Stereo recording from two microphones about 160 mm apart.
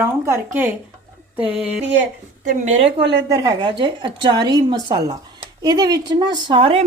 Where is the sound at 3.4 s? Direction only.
30° right (ahead or behind).